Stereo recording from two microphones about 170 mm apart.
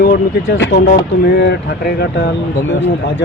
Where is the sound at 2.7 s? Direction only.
90° left.